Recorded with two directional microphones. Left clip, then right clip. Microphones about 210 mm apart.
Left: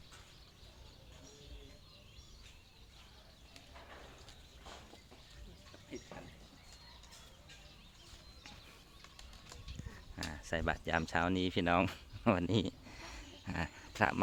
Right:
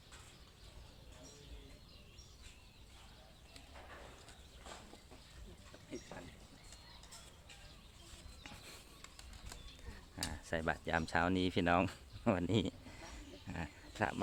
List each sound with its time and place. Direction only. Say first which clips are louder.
10.2 s speech: left 2 dB; 10° left (ahead or behind)
11.9 s speech: left 3 dB; 15° left (ahead or behind)
13.1 s cricket: left 7 dB; 25° left (ahead or behind)